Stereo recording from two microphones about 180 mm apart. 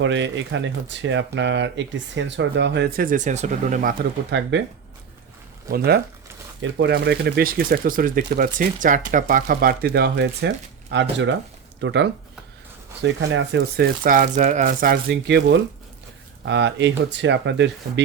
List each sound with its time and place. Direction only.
0.0 s speech: 90° right; by 3.9 s 45° right (ahead or behind)
4.3 s speech: 75° right (ahead or behind)
5.7 s speech: 60° right (ahead or behind)
6.6 s speech: 80° right